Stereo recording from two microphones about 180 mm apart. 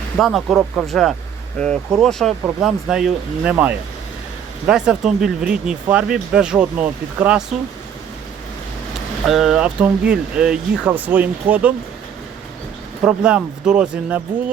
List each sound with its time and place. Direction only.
0.2 s speech: centre (ahead or behind)
9.2 s speech: centre (ahead or behind)
13.0 s speech: 5° right (ahead or behind)